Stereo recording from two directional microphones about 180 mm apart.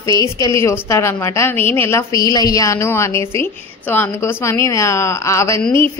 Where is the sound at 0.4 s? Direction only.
15° left (ahead or behind).